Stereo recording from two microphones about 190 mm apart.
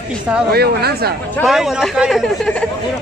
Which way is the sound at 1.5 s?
Centre (ahead or behind).